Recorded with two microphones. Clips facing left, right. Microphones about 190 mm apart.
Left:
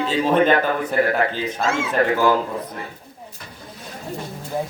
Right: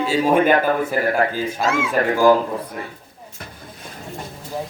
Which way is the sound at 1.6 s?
25° left (ahead or behind).